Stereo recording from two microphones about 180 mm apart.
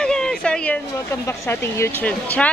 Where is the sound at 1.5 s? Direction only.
10° left (ahead or behind).